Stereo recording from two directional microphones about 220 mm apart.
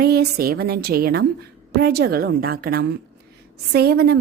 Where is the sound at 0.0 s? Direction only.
45° right (ahead or behind).